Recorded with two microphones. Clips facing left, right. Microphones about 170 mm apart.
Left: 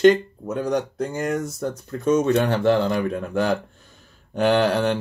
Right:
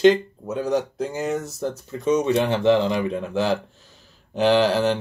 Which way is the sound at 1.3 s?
25° right (ahead or behind).